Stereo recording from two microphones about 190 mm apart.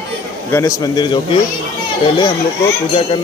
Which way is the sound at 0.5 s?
20° left (ahead or behind).